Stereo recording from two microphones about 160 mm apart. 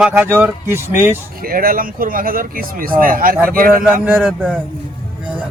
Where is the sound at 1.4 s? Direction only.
65° right (ahead or behind).